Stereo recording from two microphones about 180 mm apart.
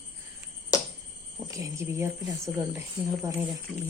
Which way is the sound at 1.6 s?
15° right (ahead or behind).